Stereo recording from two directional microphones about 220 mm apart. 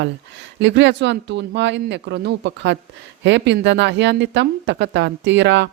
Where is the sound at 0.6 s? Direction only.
55° right (ahead or behind).